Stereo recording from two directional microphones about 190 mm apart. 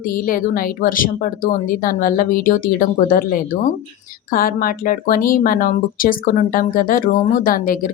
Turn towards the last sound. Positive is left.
turn(degrees=45)  # may be behind; listen again after turning